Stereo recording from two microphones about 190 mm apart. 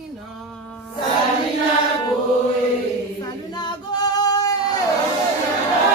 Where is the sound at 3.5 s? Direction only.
20° left (ahead or behind).